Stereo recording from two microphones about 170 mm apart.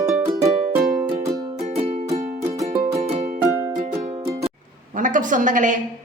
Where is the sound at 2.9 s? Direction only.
40° right (ahead or behind).